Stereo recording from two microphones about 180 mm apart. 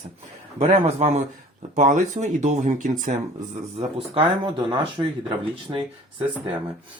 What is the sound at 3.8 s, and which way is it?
Speech, 30° right (ahead or behind).